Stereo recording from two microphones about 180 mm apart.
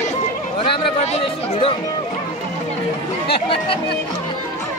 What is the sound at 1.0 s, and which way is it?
Speech, 35° left (ahead or behind).